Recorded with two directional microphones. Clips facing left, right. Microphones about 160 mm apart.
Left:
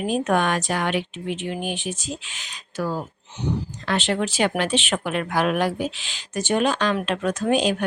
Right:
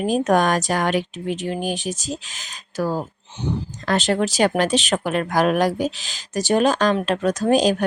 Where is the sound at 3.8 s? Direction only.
40° right (ahead or behind).